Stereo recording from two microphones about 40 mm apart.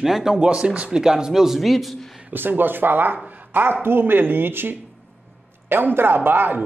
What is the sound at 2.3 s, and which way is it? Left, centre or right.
Speech, right.